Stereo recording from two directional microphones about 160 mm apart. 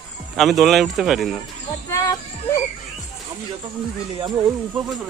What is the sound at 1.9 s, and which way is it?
Speech, 20° left (ahead or behind).